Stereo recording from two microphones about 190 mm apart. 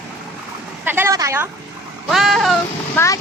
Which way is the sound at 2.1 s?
Centre (ahead or behind).